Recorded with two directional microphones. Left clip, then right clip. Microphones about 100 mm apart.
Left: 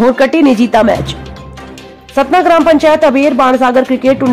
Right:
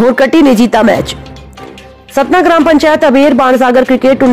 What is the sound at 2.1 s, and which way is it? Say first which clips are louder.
Speech: right 1 dB; 45° right (ahead or behind).